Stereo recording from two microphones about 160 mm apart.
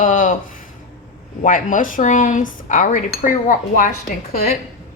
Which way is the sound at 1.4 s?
55° left (ahead or behind).